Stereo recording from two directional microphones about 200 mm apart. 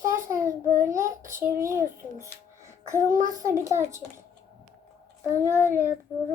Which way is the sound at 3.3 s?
15° right (ahead or behind).